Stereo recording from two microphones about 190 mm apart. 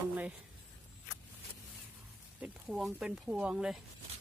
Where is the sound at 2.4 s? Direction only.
Centre (ahead or behind).